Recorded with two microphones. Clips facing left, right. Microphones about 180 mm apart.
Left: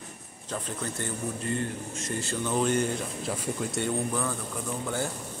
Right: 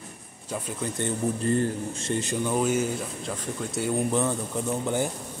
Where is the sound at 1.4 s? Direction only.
35° right (ahead or behind).